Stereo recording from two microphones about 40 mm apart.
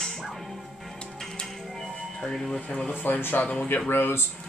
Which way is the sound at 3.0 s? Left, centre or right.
Left.